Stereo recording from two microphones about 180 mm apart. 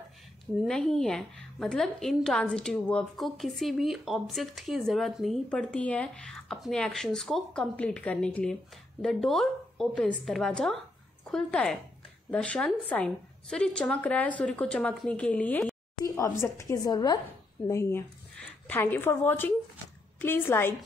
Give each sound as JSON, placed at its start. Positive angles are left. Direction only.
{"t": 0.6, "sound": "a woman's voice", "side_deg": 0}